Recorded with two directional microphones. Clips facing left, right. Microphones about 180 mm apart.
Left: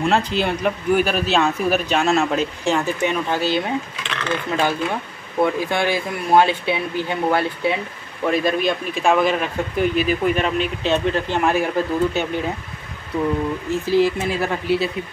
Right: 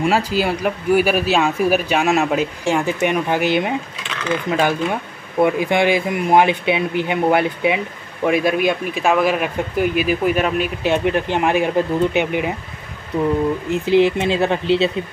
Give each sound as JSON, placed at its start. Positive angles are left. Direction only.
{"t": 0.0, "sound": "speech", "side_deg": -5}
{"t": 13.7, "sound": "speech", "side_deg": -20}